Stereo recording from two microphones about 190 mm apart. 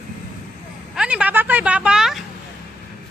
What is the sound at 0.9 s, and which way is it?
A woman's voice, 5° right (ahead or behind).